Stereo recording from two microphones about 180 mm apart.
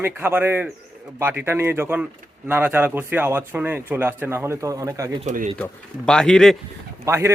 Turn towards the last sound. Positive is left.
turn(degrees=-15)  # may be behind; listen again after turning